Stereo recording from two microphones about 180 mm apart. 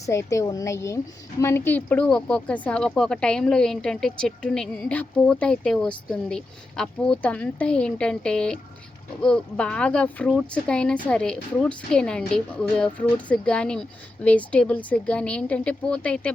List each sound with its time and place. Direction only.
0.0 s speech: 15° left (ahead or behind)